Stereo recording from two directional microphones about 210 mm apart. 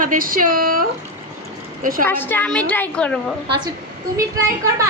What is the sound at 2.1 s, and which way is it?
A woman's voice, 10° left (ahead or behind).